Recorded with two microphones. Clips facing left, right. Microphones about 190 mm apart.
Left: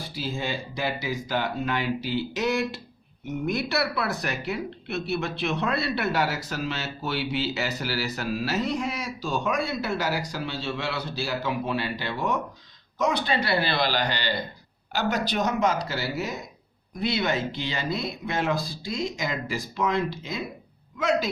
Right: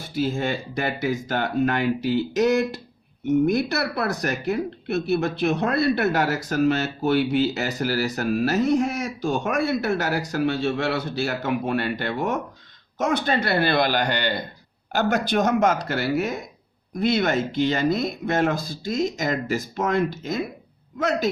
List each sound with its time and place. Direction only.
0.1 s speech: 50° right (ahead or behind)